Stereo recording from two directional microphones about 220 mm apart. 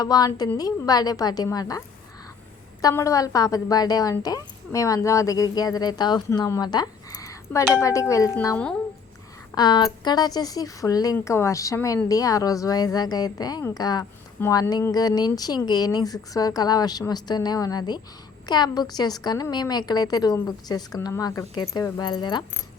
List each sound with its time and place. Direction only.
0.0 s speech: 15° left (ahead or behind)
2.8 s speech: 15° left (ahead or behind)
9.6 s speech: 20° left (ahead or behind)